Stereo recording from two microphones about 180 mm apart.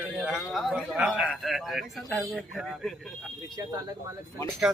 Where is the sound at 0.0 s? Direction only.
5° right (ahead or behind).